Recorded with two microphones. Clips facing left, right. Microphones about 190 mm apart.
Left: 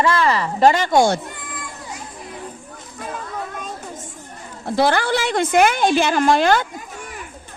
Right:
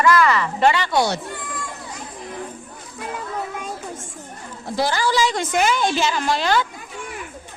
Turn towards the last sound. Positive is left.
turn(degrees=50)  # may be behind; listen again after turning